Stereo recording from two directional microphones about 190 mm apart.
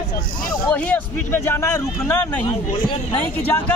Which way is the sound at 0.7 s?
10° left (ahead or behind).